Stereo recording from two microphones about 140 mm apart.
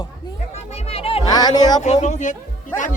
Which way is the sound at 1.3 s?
30° left (ahead or behind).